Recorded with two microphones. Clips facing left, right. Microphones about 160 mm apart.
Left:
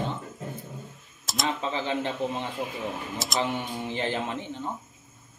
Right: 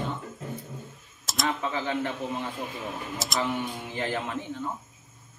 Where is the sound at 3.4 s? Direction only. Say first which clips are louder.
Even; 20° left (ahead or behind).